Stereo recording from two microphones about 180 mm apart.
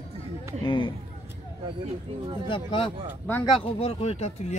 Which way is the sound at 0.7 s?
25° left (ahead or behind).